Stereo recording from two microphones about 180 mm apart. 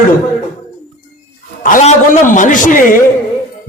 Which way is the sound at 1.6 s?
45° left (ahead or behind).